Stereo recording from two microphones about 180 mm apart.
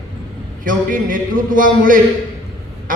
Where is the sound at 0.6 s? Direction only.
50° right (ahead or behind).